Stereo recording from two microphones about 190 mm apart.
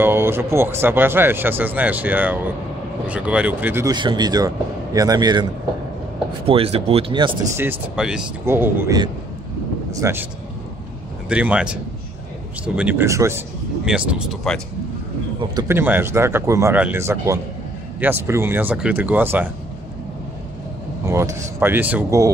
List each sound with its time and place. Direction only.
0.0 s speech: 10° right (ahead or behind)
3.9 s speech: 25° right (ahead or behind)
7.5 s speech: 10° right (ahead or behind)
11.2 s speech: 5° right (ahead or behind)
13.8 s speech: 5° right (ahead or behind)
15.5 s speech: 10° right (ahead or behind)
21.0 s speech: 15° right (ahead or behind)